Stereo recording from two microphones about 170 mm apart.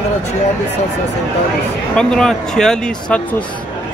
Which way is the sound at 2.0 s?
5° left (ahead or behind).